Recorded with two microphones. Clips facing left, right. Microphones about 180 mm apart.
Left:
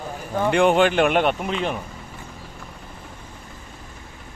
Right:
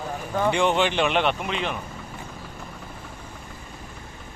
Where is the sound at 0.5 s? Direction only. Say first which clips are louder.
Left 8 dB; 55° left (ahead or behind).